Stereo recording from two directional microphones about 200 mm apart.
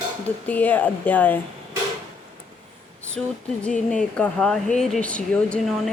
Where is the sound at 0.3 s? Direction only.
10° left (ahead or behind).